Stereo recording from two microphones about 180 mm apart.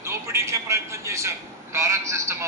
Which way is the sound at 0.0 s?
15° right (ahead or behind).